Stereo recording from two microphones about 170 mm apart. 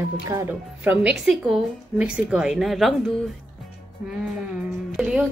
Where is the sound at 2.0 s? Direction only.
5° right (ahead or behind).